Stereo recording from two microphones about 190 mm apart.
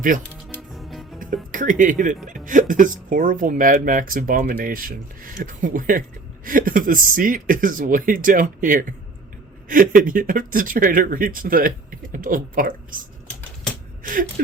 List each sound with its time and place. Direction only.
0.7 s music: centre (ahead or behind)
1.2 s speech: 45° right (ahead or behind)
14.0 s a sound: 50° right (ahead or behind)